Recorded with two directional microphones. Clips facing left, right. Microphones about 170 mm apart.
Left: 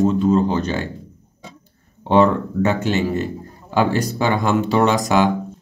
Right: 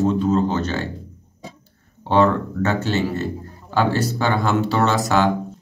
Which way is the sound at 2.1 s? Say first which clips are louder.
Left 2 dB; 15° left (ahead or behind).